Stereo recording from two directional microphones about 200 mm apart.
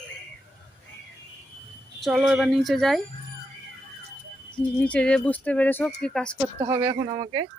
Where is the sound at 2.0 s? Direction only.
5° right (ahead or behind).